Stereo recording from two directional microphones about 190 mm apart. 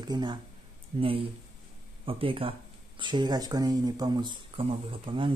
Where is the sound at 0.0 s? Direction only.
20° right (ahead or behind).